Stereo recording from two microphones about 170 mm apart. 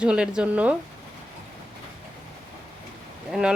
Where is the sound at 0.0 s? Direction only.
5° right (ahead or behind).